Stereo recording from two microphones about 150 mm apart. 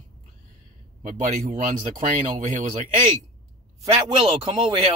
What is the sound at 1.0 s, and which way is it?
Speech, 55° right (ahead or behind).